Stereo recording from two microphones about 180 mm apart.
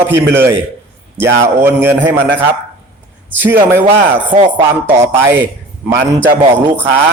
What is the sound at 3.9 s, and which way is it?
Speech, 35° right (ahead or behind).